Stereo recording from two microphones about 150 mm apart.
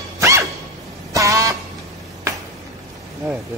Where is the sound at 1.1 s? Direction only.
20° right (ahead or behind).